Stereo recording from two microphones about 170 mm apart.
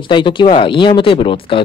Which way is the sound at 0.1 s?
30° left (ahead or behind).